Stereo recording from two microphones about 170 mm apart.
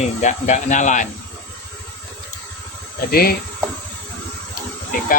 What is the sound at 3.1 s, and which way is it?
Speech, 60° left (ahead or behind).